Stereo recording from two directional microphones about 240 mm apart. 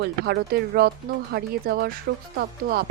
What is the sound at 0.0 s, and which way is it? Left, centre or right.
Speech, right.